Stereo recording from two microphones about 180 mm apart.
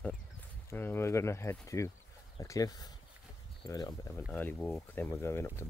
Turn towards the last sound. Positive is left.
turn(degrees=15)  # may be behind; listen again after turning